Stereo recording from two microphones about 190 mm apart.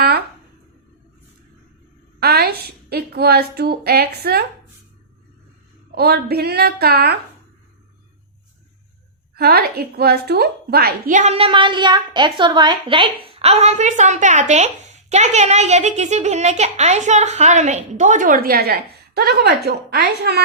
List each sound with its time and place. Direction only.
0.0 s a sound: 55° right (ahead or behind)
2.2 s a woman's voice: 55° right (ahead or behind)
5.9 s a woman's voice: 55° right (ahead or behind)
9.3 s a woman's voice: 55° right (ahead or behind)